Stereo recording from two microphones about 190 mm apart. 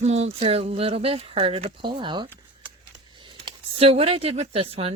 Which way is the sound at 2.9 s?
25° right (ahead or behind).